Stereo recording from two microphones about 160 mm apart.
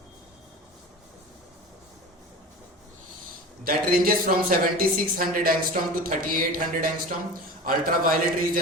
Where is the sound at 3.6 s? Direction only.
65° right (ahead or behind).